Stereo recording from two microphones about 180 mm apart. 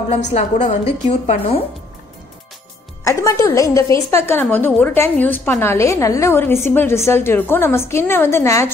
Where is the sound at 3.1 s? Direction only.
15° left (ahead or behind).